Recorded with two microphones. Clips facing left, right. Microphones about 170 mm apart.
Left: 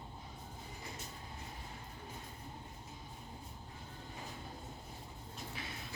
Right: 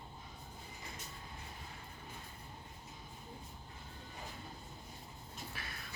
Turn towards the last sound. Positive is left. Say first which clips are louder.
# left 3 dB
turn(degrees=20)  # may be behind; listen again after turning